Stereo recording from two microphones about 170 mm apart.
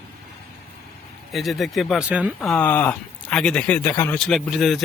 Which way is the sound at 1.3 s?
Centre (ahead or behind).